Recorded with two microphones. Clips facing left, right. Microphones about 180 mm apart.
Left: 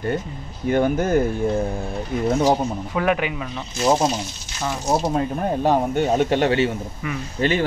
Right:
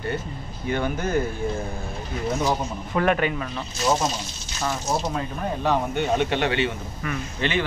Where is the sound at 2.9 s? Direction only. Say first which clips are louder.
Right 1 dB; 10° left (ahead or behind).